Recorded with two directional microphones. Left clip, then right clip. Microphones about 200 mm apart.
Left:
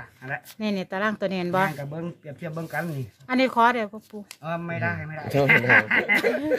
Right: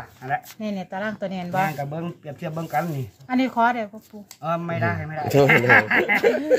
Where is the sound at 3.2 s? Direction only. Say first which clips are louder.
Left 1 dB; 50° left (ahead or behind).